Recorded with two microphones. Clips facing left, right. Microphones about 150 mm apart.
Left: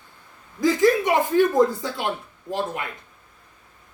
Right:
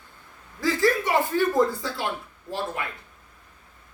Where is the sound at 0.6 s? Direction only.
20° left (ahead or behind).